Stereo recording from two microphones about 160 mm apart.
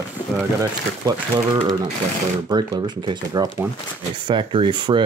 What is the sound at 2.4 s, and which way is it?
Speech, 30° right (ahead or behind).